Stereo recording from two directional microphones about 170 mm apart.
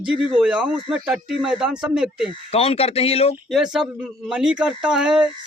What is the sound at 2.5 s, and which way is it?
Speech, 35° left (ahead or behind).